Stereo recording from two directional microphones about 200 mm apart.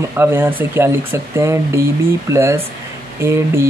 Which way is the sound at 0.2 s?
10° right (ahead or behind).